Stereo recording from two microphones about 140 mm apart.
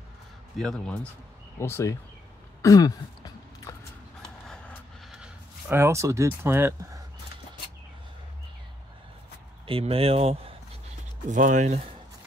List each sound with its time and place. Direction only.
0.6 s a man's voice: 5° left (ahead or behind)
1.6 s speech: 20° left (ahead or behind)
2.6 s throat clearing: 25° left (ahead or behind)
4.5 s vehicle: centre (ahead or behind)
5.7 s speech: 20° right (ahead or behind)
9.7 s speech: 40° right (ahead or behind)
11.2 s speech: 65° right (ahead or behind)